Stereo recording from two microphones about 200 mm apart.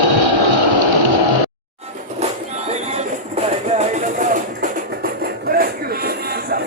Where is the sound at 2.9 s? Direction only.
35° right (ahead or behind).